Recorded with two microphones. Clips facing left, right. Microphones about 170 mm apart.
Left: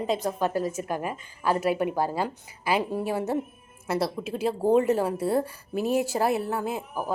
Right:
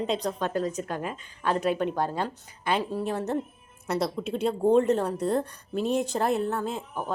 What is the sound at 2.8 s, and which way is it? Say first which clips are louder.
Speech: left 1 dB; 20° left (ahead or behind).